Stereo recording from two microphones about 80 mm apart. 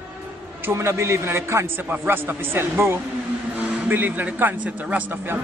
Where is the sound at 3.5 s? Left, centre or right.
Right.